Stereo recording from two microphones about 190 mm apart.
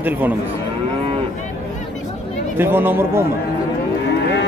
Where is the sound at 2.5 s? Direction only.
10° right (ahead or behind).